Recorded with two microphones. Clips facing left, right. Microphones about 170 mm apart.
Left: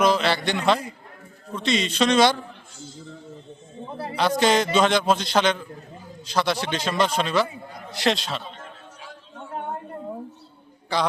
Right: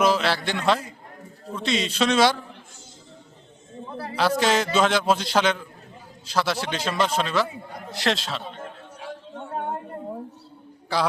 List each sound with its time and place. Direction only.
0.0 s a man's voice: 5° right (ahead or behind)
3.8 s a sound: 25° left (ahead or behind)
4.2 s a man's voice: 5° right (ahead or behind)
10.9 s a man's voice: 5° right (ahead or behind)